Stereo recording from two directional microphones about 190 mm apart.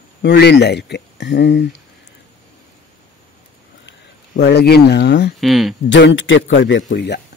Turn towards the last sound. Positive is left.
turn(degrees=60)  # may be behind; listen again after turning